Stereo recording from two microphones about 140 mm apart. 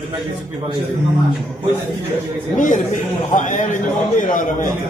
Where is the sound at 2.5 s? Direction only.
65° left (ahead or behind).